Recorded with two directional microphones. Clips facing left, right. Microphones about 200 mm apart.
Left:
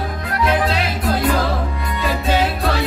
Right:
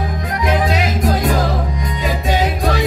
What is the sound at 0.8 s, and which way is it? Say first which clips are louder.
Music: right 2 dB; 45° right (ahead or behind).